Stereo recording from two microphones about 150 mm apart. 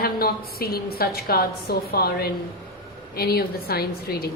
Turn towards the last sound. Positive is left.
turn(degrees=90)